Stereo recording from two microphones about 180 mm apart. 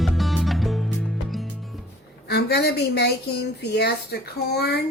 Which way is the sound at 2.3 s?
65° left (ahead or behind).